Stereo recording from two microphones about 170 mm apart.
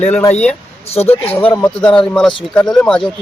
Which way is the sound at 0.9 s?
35° left (ahead or behind).